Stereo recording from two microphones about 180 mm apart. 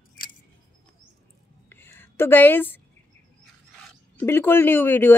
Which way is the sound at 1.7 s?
10° left (ahead or behind).